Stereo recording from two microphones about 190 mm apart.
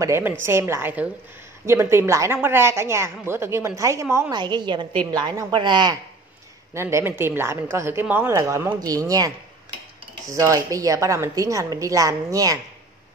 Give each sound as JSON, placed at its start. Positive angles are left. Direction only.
{"t": 0.0, "sound": "a woman's voice", "side_deg": -15}
{"t": 10.3, "sound": "a woman's voice", "side_deg": -15}